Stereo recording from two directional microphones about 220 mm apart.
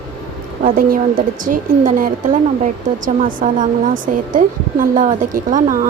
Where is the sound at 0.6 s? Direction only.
40° right (ahead or behind).